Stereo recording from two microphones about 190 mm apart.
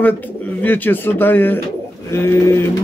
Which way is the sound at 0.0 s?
10° left (ahead or behind).